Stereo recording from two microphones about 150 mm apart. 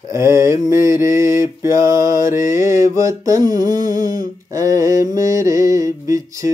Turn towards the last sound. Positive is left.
turn(degrees=-20)  # may be behind; listen again after turning